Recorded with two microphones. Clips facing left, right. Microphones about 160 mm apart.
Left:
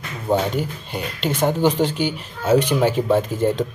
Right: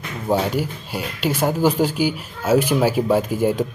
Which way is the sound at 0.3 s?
5° right (ahead or behind).